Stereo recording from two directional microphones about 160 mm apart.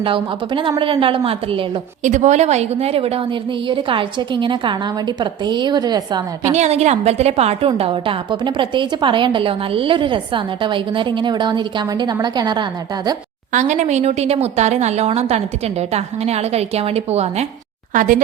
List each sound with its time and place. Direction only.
0.0 s a woman's voice: 30° right (ahead or behind)
2.0 s a woman's voice: 50° right (ahead or behind); by 6.2 s 25° right (ahead or behind)
6.5 s a woman's voice: 45° right (ahead or behind); by 12.6 s 25° right (ahead or behind)
13.5 s a woman's voice: 50° right (ahead or behind)
17.9 s speech: 55° right (ahead or behind)